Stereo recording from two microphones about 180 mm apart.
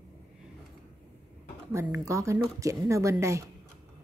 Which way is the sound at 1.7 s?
15° right (ahead or behind).